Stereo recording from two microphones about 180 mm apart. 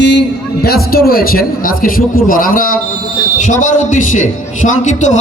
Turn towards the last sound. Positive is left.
turn(degrees=45)  # may be behind; listen again after turning